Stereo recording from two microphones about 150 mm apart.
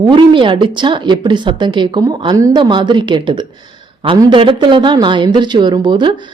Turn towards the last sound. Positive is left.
turn(degrees=-30)  # may be behind; listen again after turning